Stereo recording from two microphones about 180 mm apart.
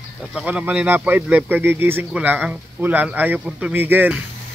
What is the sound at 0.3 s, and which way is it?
A man's voice, 5° right (ahead or behind).